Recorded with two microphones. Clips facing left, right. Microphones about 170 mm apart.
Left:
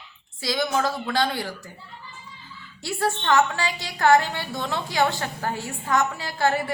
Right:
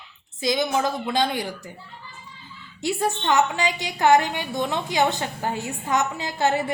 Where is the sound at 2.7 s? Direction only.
20° right (ahead or behind).